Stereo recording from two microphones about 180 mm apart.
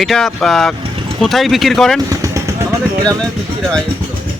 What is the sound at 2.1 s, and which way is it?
Vehicle, 20° right (ahead or behind).